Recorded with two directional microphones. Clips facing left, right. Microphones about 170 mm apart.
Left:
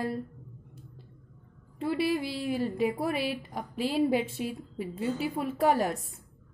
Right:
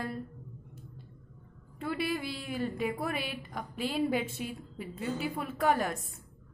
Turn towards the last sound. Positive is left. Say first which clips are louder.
# left 3 dB
turn(degrees=30)  # may be behind; listen again after turning